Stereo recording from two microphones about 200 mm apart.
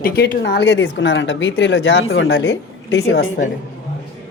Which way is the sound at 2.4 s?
60° left (ahead or behind).